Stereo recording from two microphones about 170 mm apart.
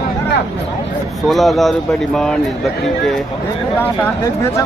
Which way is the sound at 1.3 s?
Centre (ahead or behind).